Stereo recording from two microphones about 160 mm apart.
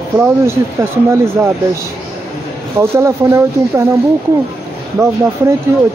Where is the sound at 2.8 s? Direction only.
15° right (ahead or behind).